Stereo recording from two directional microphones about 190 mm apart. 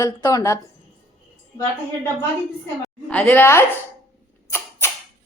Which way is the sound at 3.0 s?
5° left (ahead or behind).